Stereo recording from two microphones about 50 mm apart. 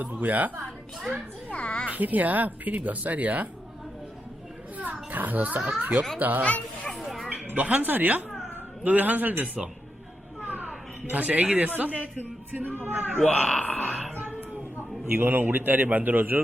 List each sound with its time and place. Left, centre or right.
0.0 s speech: right
1.5 s a sound: left
1.9 s speech: right
4.8 s children playing: right
5.8 s speech: right
6.4 s speech: left
7.0 s music: centre
7.5 s speech: right
9.6 s a woman's voice: centre
10.4 s a sound: right
11.1 s speech: right
12.8 s speech: right
13.1 s speech: centre
15.1 s speech: right